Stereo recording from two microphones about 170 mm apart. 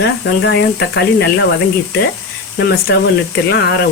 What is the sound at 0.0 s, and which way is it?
Speech, 85° left.